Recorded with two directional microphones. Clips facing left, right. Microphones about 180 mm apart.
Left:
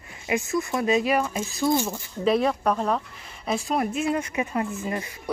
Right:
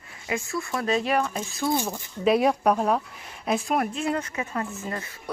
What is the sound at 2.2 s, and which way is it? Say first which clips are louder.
Speech: right 1 dB; 5° right (ahead or behind).